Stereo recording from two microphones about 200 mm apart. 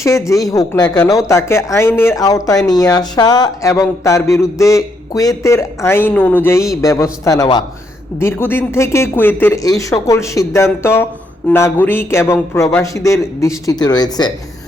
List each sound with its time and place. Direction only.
0.0 s speech: 15° left (ahead or behind)